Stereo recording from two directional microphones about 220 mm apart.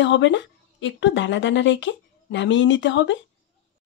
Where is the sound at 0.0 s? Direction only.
55° left (ahead or behind).